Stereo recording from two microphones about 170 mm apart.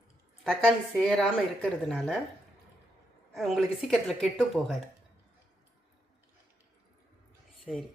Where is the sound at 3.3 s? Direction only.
Centre (ahead or behind).